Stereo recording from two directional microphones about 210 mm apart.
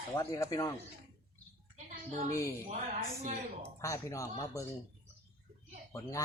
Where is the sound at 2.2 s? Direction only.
15° left (ahead or behind).